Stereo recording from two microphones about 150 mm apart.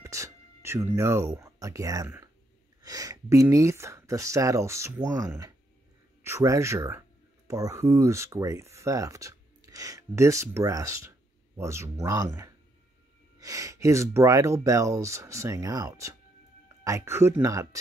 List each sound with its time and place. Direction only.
0.0 s speech: 20° right (ahead or behind)